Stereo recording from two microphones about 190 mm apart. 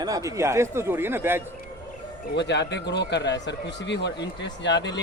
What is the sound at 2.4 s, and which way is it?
Speech, 65° left (ahead or behind).